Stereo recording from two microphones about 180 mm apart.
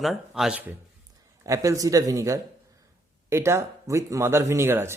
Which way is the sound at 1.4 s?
20° right (ahead or behind).